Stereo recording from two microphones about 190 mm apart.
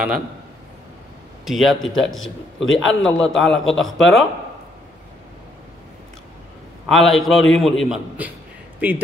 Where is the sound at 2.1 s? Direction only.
90° left.